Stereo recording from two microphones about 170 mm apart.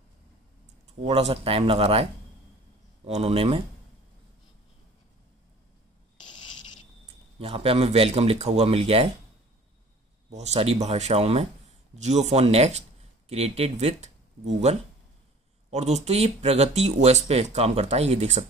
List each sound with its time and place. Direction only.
1.0 s speech: 35° right (ahead or behind)
3.1 s speech: 35° right (ahead or behind)
6.2 s a sound: 25° left (ahead or behind)
7.3 s speech: 35° right (ahead or behind)
10.3 s speech: 40° right (ahead or behind)